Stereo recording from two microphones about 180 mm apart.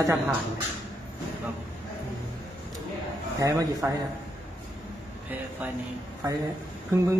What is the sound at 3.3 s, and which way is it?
Speech, 15° right (ahead or behind).